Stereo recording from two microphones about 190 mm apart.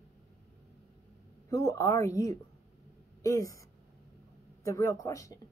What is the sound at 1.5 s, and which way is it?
A woman's voice, 15° left (ahead or behind).